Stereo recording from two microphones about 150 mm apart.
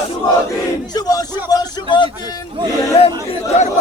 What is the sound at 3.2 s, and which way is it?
Speech, 50° left (ahead or behind).